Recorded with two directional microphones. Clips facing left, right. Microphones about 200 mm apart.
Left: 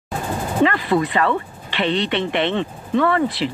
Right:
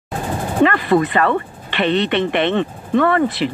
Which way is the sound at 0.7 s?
55° right (ahead or behind).